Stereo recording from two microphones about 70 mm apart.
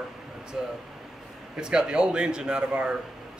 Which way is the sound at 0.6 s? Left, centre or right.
Centre.